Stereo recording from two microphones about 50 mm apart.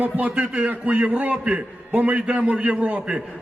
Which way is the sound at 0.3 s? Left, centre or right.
Right.